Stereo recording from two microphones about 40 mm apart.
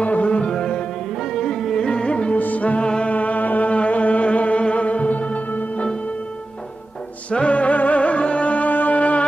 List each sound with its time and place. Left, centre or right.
0.0 s music: left
0.5 s music: centre
2.3 s music: left
7.2 s music: left